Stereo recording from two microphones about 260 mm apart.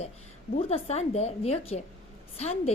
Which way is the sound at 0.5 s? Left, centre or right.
Left.